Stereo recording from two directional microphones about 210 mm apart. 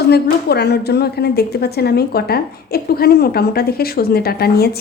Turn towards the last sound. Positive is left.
turn(degrees=50)  # may be behind; listen again after turning